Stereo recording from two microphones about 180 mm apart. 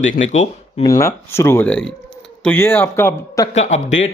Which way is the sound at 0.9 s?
15° left (ahead or behind).